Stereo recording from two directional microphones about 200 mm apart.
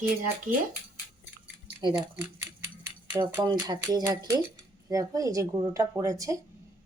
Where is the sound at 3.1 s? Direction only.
20° right (ahead or behind).